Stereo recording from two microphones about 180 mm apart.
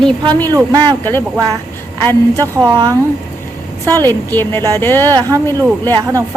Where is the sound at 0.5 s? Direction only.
25° right (ahead or behind).